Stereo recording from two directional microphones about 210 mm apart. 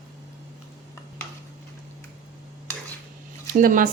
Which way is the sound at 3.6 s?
45° right (ahead or behind).